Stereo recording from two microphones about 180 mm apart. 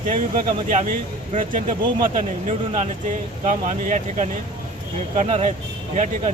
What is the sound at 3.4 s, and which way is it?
Speech, 40° right (ahead or behind).